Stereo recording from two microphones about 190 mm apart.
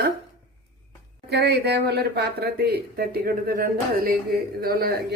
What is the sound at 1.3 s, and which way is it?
Speech, 60° right (ahead or behind).